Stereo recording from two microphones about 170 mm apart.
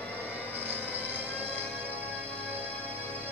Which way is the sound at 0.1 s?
10° right (ahead or behind).